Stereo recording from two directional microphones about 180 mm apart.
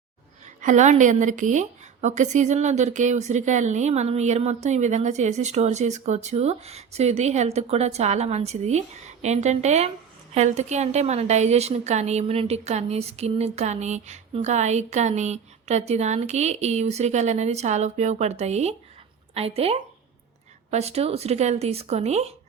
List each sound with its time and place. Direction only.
0.4 s a woman's voice: 40° right (ahead or behind)